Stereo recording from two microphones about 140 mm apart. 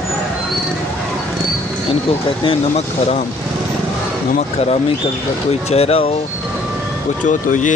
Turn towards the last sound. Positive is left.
turn(degrees=65)  # may be behind; listen again after turning